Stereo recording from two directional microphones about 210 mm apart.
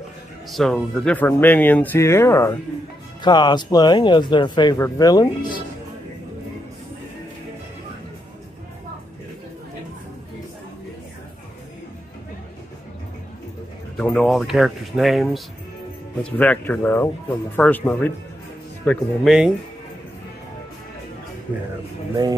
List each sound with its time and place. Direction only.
0.5 s speech: centre (ahead or behind); by 5.6 s 20° left (ahead or behind)
13.9 s speech: 5° left (ahead or behind)
18.9 s speech: centre (ahead or behind)